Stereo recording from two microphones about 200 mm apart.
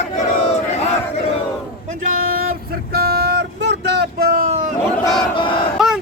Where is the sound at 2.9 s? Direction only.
50° right (ahead or behind).